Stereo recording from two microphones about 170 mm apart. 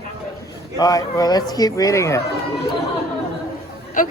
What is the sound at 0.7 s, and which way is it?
Speech, 20° left (ahead or behind).